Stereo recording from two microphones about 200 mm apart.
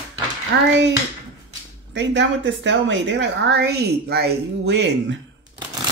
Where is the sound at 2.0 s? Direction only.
65° right (ahead or behind).